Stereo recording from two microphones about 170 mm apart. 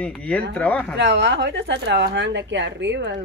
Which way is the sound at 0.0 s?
5° left (ahead or behind).